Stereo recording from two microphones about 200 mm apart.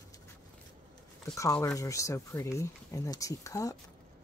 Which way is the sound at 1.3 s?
15° left (ahead or behind).